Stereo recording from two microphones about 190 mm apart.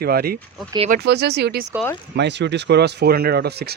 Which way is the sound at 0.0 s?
55° right (ahead or behind).